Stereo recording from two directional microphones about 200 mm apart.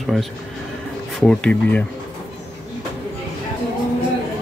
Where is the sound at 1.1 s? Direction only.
5° left (ahead or behind).